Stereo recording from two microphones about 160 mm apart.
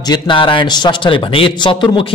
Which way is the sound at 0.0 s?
30° left (ahead or behind).